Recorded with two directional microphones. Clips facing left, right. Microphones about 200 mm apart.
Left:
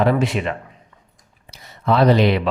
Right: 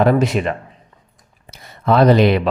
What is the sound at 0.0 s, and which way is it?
Speech, 45° right (ahead or behind).